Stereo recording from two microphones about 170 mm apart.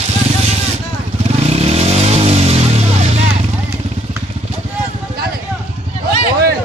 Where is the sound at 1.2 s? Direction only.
40° right (ahead or behind).